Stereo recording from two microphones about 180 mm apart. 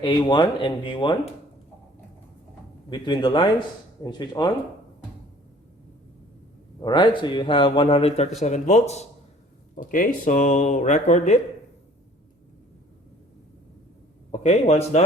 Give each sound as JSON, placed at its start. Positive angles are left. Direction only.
{"t": 0.0, "sound": "a man's voice", "side_deg": 25}
{"t": 2.9, "sound": "a man's voice", "side_deg": 25}
{"t": 6.7, "sound": "a man's voice", "side_deg": 25}
{"t": 9.7, "sound": "speech", "side_deg": 50}
{"t": 14.4, "sound": "speech", "side_deg": 40}